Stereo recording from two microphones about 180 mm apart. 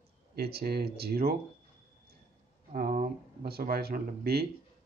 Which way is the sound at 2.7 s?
55° right (ahead or behind).